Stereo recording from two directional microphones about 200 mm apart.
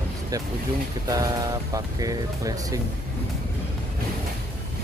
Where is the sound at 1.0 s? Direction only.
20° right (ahead or behind).